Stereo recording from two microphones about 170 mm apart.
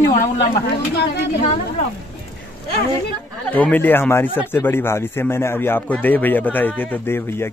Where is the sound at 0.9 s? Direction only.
90° left.